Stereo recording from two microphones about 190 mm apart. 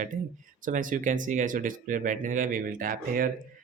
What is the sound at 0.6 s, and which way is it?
Speech, 45° right (ahead or behind).